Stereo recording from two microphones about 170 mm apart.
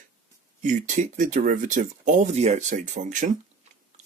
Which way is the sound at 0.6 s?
50° right (ahead or behind).